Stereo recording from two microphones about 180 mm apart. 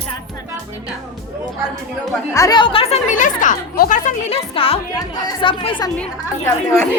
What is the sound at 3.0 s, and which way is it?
Speech, 45° left (ahead or behind).